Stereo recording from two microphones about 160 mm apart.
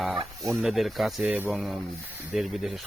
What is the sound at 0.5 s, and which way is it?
Speech, centre (ahead or behind).